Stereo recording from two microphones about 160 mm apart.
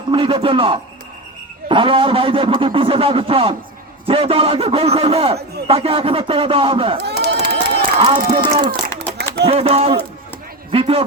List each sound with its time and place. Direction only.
0.1 s a man's voice: 30° right (ahead or behind)
7.2 s crowd: 90° right
7.8 s a man's voice: 30° right (ahead or behind)